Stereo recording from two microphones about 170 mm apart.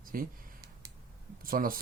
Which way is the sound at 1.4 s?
55° right (ahead or behind).